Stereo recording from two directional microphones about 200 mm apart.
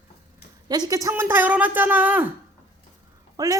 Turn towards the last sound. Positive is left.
turn(degrees=-15)  # may be behind; listen again after turning